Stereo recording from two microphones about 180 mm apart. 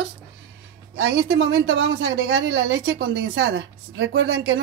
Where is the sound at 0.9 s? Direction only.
90° right.